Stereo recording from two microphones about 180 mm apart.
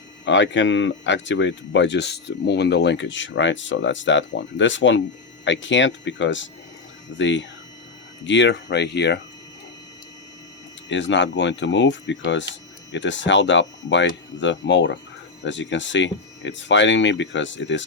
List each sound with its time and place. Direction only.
0.3 s speech: 90° left; by 9.2 s 70° left (ahead or behind)
10.8 s speech: 90° left